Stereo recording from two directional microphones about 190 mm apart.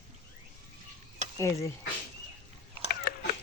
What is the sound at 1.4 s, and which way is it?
Speech, 15° left (ahead or behind).